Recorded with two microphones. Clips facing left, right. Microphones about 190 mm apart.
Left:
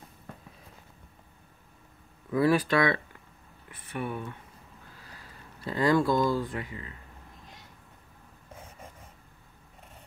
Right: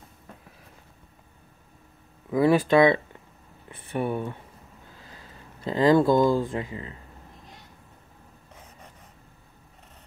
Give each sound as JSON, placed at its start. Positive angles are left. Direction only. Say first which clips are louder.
{"t": 2.3, "sound": "speech", "louder": "right 5 dB", "side_deg": -25}